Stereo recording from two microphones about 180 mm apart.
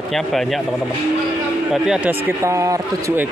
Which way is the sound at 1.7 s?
5° right (ahead or behind).